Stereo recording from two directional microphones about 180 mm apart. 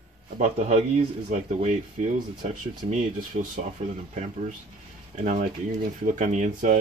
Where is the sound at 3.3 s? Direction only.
50° right (ahead or behind).